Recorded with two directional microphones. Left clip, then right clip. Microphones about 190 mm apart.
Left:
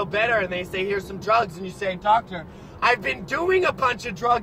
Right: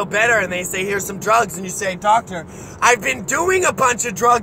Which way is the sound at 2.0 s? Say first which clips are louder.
Right 4 dB; 25° right (ahead or behind).